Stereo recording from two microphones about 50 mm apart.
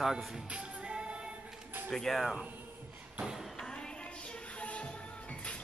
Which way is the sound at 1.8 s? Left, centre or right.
Centre.